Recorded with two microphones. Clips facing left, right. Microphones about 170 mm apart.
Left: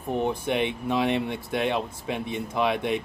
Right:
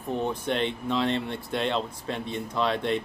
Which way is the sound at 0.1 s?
15° left (ahead or behind).